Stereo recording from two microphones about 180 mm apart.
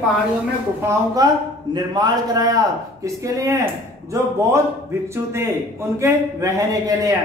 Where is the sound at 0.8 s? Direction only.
20° right (ahead or behind).